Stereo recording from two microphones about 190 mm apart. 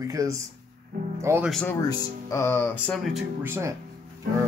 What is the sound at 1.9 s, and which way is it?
Speech, 15° left (ahead or behind).